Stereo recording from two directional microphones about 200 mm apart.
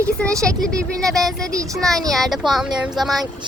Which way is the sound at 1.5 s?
15° right (ahead or behind).